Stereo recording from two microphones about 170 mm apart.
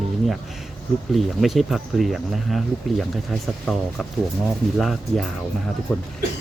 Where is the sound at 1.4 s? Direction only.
Centre (ahead or behind).